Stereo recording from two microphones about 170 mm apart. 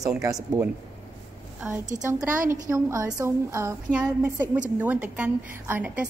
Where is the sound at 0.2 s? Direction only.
20° right (ahead or behind).